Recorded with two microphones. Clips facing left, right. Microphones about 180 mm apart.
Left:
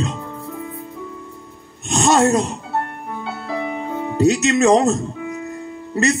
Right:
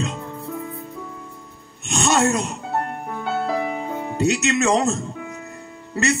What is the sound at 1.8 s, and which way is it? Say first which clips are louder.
Music: left 4 dB; 35° left (ahead or behind).